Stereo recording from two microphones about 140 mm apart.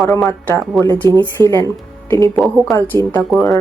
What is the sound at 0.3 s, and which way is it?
Speech, 20° left (ahead or behind).